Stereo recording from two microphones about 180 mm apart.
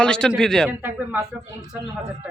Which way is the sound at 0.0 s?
5° left (ahead or behind).